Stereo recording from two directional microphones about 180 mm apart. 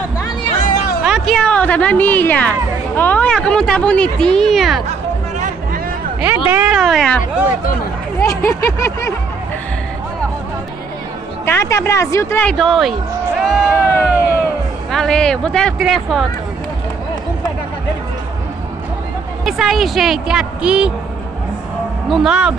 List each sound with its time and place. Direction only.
0.6 s music: 55° left (ahead or behind)
1.0 s speech: centre (ahead or behind)
6.5 s speech: 10° right (ahead or behind)
6.8 s speech: centre (ahead or behind)
8.2 s speech: 15° left (ahead or behind)
11.4 s speech: 15° left (ahead or behind)
13.8 s a sound: 15° left (ahead or behind)
14.9 s speech: centre (ahead or behind)
19.4 s speech: centre (ahead or behind)
22.1 s speech: 5° right (ahead or behind)